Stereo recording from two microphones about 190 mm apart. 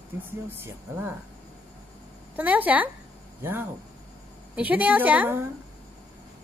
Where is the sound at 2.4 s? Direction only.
10° right (ahead or behind).